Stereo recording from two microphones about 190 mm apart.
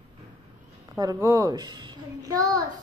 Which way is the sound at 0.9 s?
15° right (ahead or behind).